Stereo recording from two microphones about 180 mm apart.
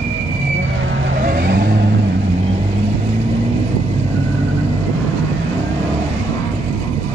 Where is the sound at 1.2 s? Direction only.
55° right (ahead or behind).